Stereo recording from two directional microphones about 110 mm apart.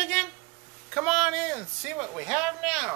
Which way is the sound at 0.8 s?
5° right (ahead or behind).